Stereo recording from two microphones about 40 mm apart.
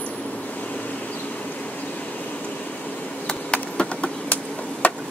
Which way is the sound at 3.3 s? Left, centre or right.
Left.